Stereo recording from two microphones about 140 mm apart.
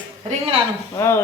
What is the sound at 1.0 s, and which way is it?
Dishes, 20° left (ahead or behind).